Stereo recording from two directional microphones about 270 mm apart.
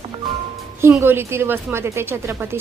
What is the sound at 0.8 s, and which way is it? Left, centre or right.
A woman's voice, centre.